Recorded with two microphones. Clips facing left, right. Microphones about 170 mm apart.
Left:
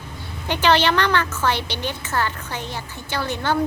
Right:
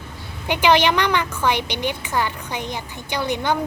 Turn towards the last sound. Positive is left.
turn(degrees=-15)  # may be behind; listen again after turning